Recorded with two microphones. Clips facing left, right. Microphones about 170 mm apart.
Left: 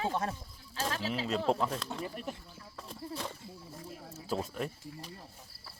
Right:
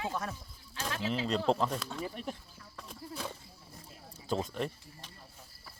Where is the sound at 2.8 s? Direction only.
Centre (ahead or behind).